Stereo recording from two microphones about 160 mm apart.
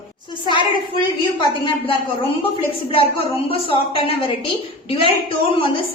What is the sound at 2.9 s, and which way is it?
Speech, 35° left (ahead or behind).